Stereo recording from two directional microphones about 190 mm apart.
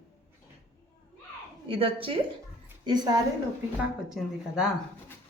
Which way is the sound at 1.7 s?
30° right (ahead or behind).